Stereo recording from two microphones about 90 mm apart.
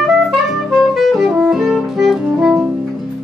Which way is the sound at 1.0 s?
5° right (ahead or behind).